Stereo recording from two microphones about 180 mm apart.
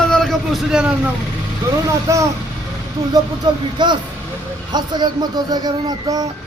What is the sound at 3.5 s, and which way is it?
Speech, 25° right (ahead or behind).